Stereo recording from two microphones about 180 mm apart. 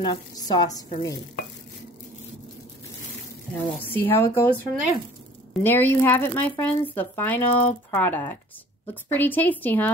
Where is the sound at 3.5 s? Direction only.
10° left (ahead or behind).